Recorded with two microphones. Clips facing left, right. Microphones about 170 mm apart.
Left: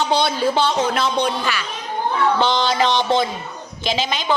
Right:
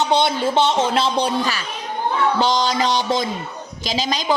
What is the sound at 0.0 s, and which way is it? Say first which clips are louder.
A woman's voice: even; 20° right (ahead or behind).